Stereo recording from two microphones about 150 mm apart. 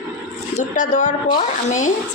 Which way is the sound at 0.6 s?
55° left (ahead or behind).